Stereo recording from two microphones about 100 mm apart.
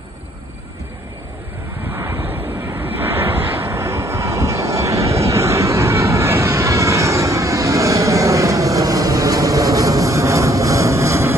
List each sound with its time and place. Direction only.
1.9 s waves: 25° right (ahead or behind)
2.3 s vehicle: 20° right (ahead or behind)